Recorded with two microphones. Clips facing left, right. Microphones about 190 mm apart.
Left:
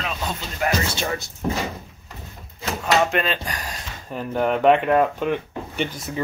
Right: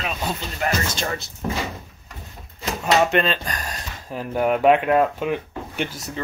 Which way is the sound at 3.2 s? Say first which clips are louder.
Right 1 dB; 10° left (ahead or behind).